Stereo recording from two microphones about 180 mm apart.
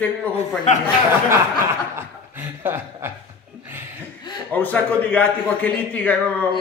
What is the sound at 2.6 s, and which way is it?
Chuckle, 15° right (ahead or behind).